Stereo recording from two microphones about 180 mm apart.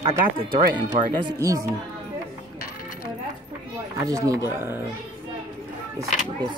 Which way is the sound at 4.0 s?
15° right (ahead or behind).